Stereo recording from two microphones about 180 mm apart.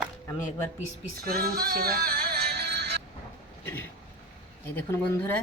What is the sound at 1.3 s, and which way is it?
Music, 55° right (ahead or behind).